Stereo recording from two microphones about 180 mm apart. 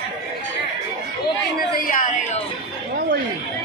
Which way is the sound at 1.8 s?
50° left (ahead or behind).